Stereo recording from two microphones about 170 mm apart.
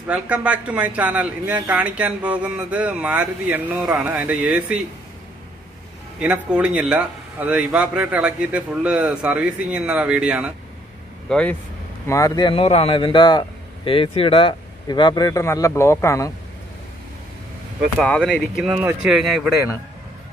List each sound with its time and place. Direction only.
0.1 s speech: 5° right (ahead or behind)
6.1 s speech: 5° right (ahead or behind)
11.2 s speech: 5° left (ahead or behind)
12.1 s speech: 20° left (ahead or behind)
17.9 s speech: 5° left (ahead or behind)